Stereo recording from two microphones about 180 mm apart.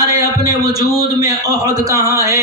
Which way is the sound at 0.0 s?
20° right (ahead or behind).